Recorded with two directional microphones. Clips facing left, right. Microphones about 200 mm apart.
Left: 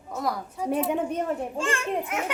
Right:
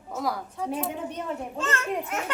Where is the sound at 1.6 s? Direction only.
10° left (ahead or behind).